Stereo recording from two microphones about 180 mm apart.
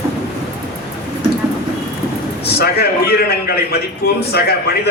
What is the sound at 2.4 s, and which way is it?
A man's voice, 60° left (ahead or behind).